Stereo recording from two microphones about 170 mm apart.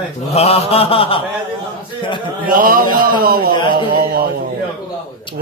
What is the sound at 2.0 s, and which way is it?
Speech, 30° left (ahead or behind).